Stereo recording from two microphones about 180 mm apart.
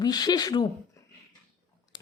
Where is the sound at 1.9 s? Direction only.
25° left (ahead or behind).